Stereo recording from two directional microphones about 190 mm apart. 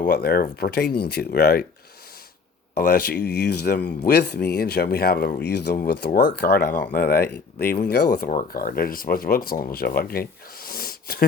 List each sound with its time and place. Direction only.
0.0 s speech: 55° left (ahead or behind)
2.7 s speech: 50° left (ahead or behind)
6.7 s speech: 10° left (ahead or behind)
6.9 s speech: 55° left (ahead or behind)